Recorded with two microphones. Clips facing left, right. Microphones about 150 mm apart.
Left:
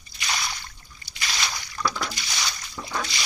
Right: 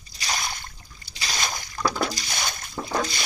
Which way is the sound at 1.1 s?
40° right (ahead or behind).